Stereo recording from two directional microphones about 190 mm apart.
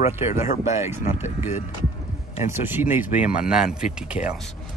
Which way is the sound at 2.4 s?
10° right (ahead or behind).